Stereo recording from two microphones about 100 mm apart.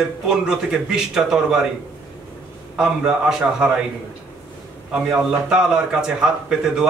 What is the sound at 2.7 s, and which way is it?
A man's voice, 10° right (ahead or behind).